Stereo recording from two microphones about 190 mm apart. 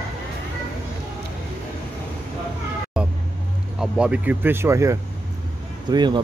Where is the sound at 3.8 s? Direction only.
5° right (ahead or behind); by 6.2 s 25° right (ahead or behind).